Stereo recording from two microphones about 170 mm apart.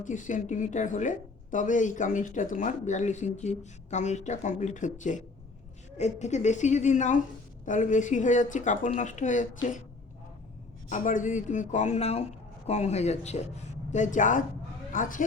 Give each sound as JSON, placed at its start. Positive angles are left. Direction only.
{"t": 0.0, "sound": "speech", "side_deg": 50}
{"t": 10.8, "sound": "speech", "side_deg": 50}